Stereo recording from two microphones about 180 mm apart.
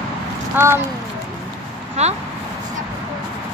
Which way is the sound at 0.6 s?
15° right (ahead or behind).